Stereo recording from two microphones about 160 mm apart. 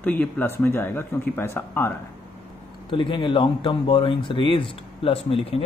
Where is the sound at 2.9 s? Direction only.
30° left (ahead or behind).